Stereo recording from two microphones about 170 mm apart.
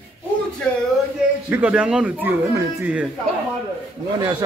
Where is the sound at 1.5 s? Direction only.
10° right (ahead or behind).